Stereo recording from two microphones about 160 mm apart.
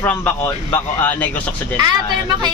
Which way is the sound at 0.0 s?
10° left (ahead or behind).